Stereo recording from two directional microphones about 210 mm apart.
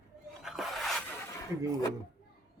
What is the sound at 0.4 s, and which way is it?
Music, centre (ahead or behind).